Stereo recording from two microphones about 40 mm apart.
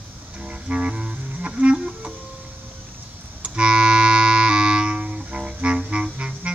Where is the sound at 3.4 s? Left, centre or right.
Right.